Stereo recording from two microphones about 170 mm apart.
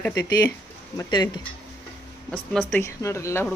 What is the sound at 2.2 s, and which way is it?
Speech, 5° left (ahead or behind).